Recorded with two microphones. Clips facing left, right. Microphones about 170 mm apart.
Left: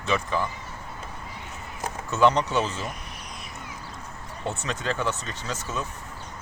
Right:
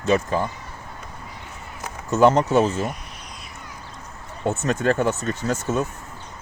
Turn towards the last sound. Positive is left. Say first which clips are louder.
# right 9 dB
turn(degrees=-50)  # may be behind; listen again after turning